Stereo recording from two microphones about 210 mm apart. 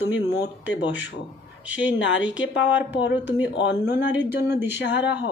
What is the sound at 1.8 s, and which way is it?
Speech, 60° left (ahead or behind).